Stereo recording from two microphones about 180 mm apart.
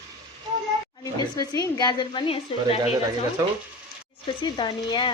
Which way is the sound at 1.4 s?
20° left (ahead or behind).